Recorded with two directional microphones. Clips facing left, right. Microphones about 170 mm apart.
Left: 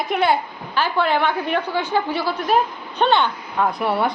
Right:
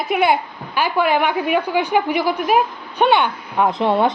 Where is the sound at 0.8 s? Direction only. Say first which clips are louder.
Right 2 dB; 10° right (ahead or behind).